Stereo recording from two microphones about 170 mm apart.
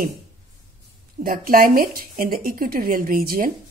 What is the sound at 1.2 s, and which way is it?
A woman's voice, 55° right (ahead or behind).